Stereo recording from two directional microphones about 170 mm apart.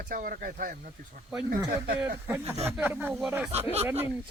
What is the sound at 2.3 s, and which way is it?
Speech, 15° right (ahead or behind).